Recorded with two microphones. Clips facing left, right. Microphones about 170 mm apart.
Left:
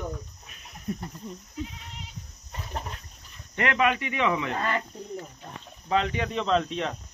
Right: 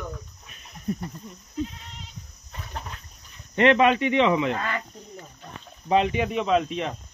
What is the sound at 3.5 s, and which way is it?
Speech, 25° right (ahead or behind).